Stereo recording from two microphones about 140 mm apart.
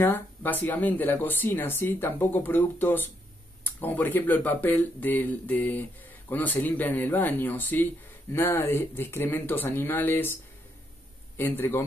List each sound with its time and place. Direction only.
0.0 s speech: 15° left (ahead or behind)